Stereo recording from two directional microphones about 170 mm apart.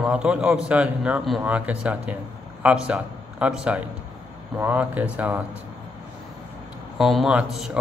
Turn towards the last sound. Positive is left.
turn(degrees=-5)  # may be behind; listen again after turning